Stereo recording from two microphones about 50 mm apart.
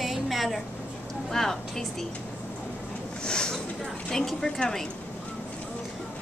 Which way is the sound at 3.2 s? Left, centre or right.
Centre.